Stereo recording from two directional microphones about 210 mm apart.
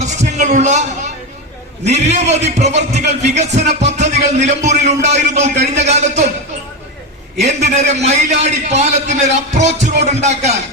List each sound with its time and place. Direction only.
0.0 s a sound: 35° right (ahead or behind)
1.8 s a man's voice: 30° right (ahead or behind)
7.4 s a man's voice: 35° right (ahead or behind)